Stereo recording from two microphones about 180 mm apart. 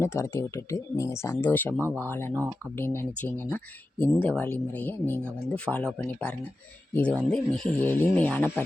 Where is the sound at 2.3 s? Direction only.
15° right (ahead or behind).